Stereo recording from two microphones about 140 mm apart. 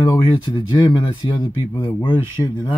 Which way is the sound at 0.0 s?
35° left (ahead or behind).